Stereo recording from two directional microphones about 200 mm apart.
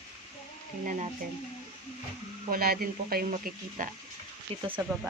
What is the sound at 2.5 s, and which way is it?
Speech, 50° right (ahead or behind).